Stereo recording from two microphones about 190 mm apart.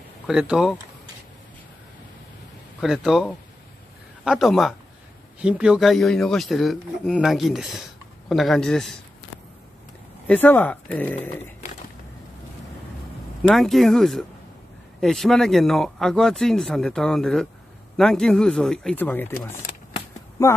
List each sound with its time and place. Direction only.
0.3 s speech: 5° right (ahead or behind)
2.8 s speech: centre (ahead or behind)
10.2 s speech: 10° left (ahead or behind)
13.4 s speech: centre (ahead or behind)
20.5 s speech: 15° left (ahead or behind)